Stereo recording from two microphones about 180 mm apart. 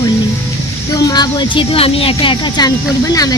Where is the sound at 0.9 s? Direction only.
20° left (ahead or behind).